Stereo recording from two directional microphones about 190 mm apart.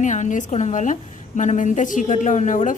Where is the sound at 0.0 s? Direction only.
40° left (ahead or behind).